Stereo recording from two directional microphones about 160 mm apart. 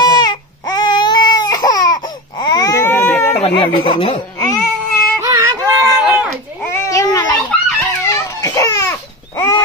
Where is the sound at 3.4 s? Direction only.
35° left (ahead or behind).